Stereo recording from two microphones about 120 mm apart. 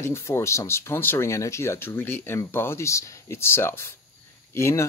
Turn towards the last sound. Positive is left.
turn(degrees=25)  # may be behind; listen again after turning